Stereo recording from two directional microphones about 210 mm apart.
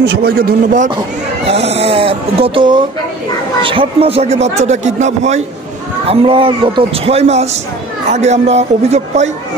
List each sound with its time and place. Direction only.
0.0 s speech: 50° right (ahead or behind)
1.5 s a man's voice: 30° right (ahead or behind)